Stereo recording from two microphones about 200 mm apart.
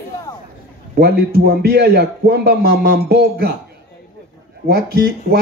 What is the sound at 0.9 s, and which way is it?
Speech, 55° right (ahead or behind).